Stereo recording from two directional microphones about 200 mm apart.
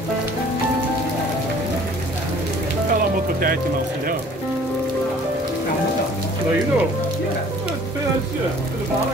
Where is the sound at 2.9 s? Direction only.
45° right (ahead or behind).